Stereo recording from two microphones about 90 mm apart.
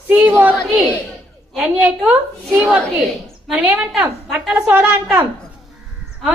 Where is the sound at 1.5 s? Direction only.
10° right (ahead or behind).